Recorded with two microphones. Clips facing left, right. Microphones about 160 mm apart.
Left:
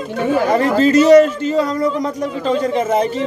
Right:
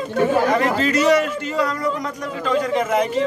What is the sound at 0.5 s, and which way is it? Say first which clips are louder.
A man's voice: left 6 dB; 35° left (ahead or behind).